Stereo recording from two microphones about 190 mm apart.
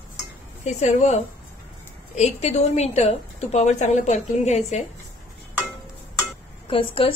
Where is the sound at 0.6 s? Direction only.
35° left (ahead or behind).